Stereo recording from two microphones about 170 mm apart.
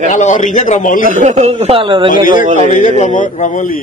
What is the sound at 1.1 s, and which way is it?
A man's voice, 45° right (ahead or behind).